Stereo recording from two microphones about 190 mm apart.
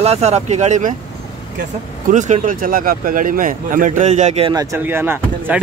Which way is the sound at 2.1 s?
40° right (ahead or behind).